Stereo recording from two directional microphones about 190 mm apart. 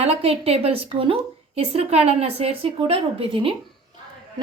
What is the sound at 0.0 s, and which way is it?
A woman's voice, 30° right (ahead or behind).